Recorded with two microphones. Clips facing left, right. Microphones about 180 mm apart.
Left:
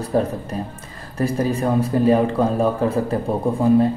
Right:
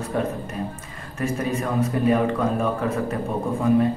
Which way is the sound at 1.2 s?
35° left (ahead or behind).